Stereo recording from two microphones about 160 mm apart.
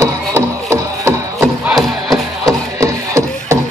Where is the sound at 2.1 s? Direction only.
20° right (ahead or behind).